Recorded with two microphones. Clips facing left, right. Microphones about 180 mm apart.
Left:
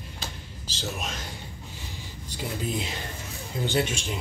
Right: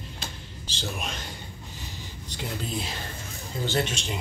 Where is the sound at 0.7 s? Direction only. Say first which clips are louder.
Even; 5° left (ahead or behind).